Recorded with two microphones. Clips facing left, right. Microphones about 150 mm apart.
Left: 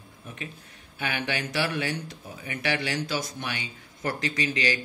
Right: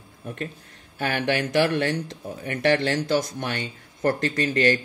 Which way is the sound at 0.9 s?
45° right (ahead or behind).